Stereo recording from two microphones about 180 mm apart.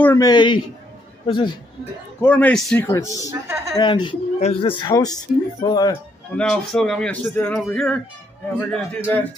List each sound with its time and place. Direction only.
0.0 s a man's voice: 15° left (ahead or behind)
2.2 s a man's voice: 10° left (ahead or behind)
2.9 s a man's voice: 15° left (ahead or behind)
6.3 s a man's voice: 5° left (ahead or behind)